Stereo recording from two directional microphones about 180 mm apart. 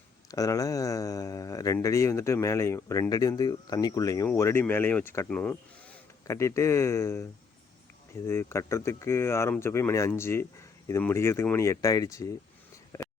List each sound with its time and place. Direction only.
0.3 s speech: 20° left (ahead or behind)
8.3 s speech: 15° left (ahead or behind)
12.9 s a sound: 15° left (ahead or behind)